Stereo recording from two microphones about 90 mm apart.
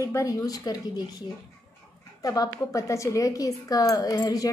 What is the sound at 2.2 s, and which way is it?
A woman's voice, 45° left (ahead or behind).